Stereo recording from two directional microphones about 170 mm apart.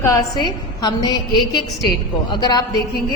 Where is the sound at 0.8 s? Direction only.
25° left (ahead or behind).